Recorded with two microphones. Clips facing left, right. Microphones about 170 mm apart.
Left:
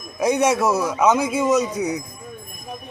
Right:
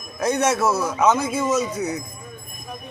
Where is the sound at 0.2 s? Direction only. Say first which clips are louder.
Left 2 dB; 10° left (ahead or behind).